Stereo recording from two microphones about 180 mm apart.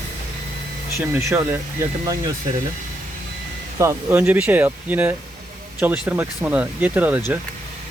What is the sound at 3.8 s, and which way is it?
Speech, 15° right (ahead or behind).